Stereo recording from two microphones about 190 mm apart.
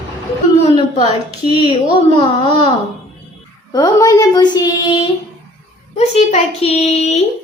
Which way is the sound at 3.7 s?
15° left (ahead or behind).